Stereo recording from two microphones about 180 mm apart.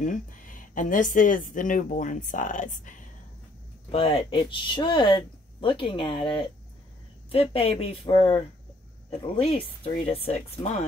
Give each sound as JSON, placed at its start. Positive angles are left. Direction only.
{"t": 0.0, "sound": "speech", "side_deg": 45}
{"t": 3.9, "sound": "speech", "side_deg": 30}